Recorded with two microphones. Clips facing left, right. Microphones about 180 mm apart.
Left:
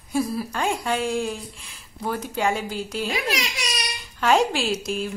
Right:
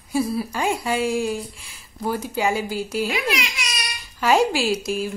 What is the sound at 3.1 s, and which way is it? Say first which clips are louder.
Speech: right 2 dB; 35° left (ahead or behind).